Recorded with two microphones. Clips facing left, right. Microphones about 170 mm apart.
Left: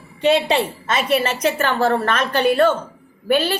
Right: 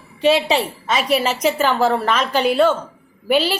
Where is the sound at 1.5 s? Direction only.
10° right (ahead or behind).